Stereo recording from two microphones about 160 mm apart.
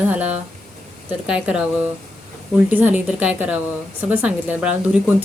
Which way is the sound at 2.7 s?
10° right (ahead or behind).